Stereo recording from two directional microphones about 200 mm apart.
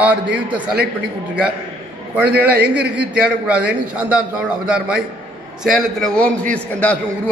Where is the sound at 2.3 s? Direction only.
55° right (ahead or behind).